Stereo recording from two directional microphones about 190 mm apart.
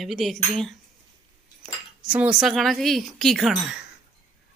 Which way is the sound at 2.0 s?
5° right (ahead or behind).